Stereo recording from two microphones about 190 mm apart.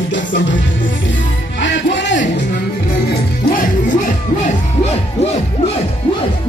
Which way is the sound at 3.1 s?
45° left (ahead or behind).